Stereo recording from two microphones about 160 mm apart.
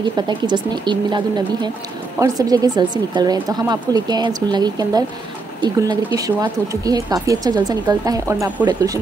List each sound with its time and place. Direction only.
0.3 s speech: 30° right (ahead or behind)